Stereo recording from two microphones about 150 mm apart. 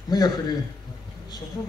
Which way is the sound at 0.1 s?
25° left (ahead or behind).